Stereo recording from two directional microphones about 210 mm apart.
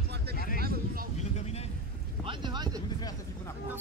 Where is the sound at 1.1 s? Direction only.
30° left (ahead or behind).